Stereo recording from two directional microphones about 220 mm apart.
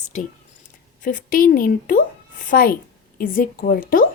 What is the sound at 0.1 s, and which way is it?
A woman's voice, 35° left (ahead or behind).